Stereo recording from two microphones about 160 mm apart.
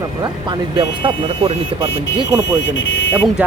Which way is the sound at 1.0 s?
35° right (ahead or behind).